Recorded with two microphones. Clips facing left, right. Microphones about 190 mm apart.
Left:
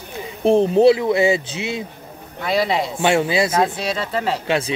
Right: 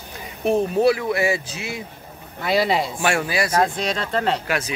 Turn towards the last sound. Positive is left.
turn(degrees=30)  # may be behind; listen again after turning